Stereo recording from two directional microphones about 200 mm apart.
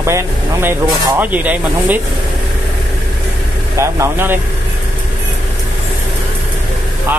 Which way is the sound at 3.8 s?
10° right (ahead or behind).